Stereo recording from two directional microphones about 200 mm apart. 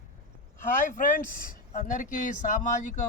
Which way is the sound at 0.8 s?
40° left (ahead or behind).